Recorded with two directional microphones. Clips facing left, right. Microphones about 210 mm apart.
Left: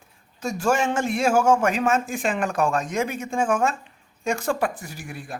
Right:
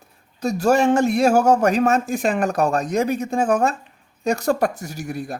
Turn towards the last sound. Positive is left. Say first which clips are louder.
# right 8 dB
turn(degrees=-40)  # may be behind; listen again after turning